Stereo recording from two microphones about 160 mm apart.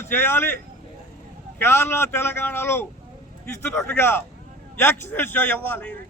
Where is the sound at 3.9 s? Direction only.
15° left (ahead or behind).